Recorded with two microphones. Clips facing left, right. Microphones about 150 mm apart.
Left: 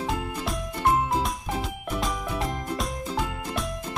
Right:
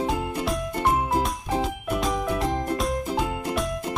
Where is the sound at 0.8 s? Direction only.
Centre (ahead or behind).